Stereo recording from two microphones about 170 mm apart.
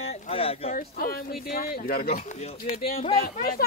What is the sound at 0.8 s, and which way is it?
Speech, 60° left (ahead or behind).